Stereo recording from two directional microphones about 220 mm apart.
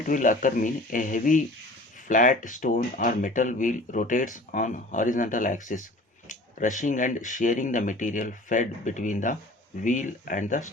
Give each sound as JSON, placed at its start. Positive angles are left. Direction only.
{"t": 0.1, "sound": "speech", "side_deg": 35}